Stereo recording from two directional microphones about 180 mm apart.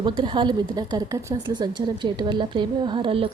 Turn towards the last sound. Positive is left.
turn(degrees=-30)  # may be behind; listen again after turning